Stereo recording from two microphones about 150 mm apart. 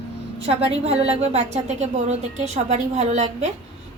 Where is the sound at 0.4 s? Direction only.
40° right (ahead or behind).